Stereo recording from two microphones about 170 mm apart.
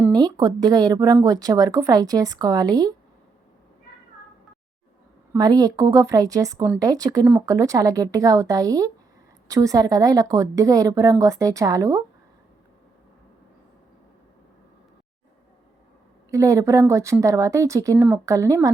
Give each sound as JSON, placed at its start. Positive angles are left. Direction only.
{"t": 0.1, "sound": "speech", "side_deg": -25}
{"t": 5.3, "sound": "speech", "side_deg": -25}
{"t": 16.3, "sound": "speech", "side_deg": -20}